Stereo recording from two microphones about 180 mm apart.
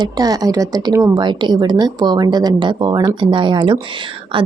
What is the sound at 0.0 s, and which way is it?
A woman's voice, 20° right (ahead or behind).